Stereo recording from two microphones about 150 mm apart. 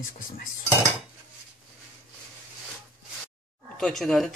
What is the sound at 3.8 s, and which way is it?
Speech, centre (ahead or behind).